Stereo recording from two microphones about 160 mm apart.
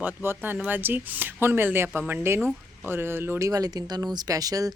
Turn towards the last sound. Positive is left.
turn(degrees=-20)  # may be behind; listen again after turning